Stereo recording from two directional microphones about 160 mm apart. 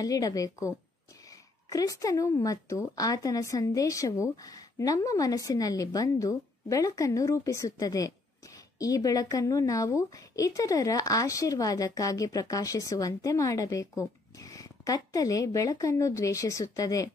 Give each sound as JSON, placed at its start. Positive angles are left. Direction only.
{"t": 0.0, "sound": "a woman's voice", "side_deg": 20}